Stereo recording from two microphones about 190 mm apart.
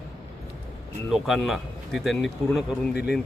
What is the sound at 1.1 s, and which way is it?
A man's voice, centre (ahead or behind).